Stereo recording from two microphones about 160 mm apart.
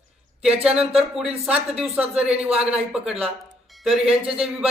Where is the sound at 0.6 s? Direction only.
5° right (ahead or behind).